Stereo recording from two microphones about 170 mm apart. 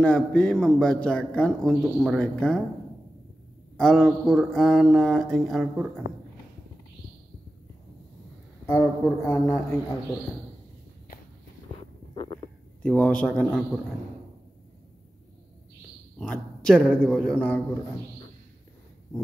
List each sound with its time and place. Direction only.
0.0 s a man's voice: 5° left (ahead or behind)
3.7 s a man's voice: 5° left (ahead or behind)
8.6 s speech: 15° left (ahead or behind)
12.8 s a man's voice: 5° left (ahead or behind)
16.2 s a man's voice: 5° left (ahead or behind)